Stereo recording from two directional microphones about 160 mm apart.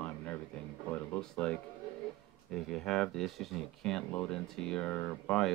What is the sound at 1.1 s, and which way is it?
Speech, 5° left (ahead or behind).